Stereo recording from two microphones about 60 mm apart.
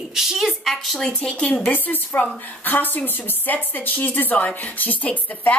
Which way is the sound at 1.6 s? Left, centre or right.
Left.